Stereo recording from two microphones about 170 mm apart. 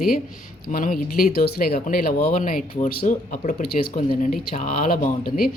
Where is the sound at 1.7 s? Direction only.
55° left (ahead or behind).